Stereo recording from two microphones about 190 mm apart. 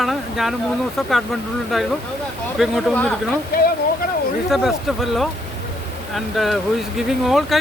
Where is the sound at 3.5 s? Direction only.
55° left (ahead or behind).